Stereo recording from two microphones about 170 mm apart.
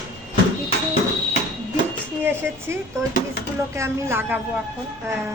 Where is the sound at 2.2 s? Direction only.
15° right (ahead or behind).